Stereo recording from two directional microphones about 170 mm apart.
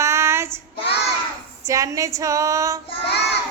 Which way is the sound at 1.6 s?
20° right (ahead or behind).